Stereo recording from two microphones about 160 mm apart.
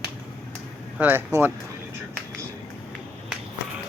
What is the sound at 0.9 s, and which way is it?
Speech, 10° right (ahead or behind).